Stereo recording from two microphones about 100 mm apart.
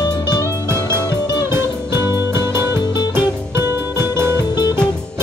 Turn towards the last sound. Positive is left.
turn(degrees=-25)  # may be behind; listen again after turning